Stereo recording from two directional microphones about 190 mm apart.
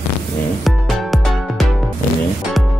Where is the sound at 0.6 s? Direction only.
Centre (ahead or behind).